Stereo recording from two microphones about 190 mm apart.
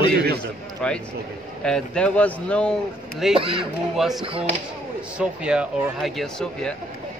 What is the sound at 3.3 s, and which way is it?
Speech, 30° right (ahead or behind).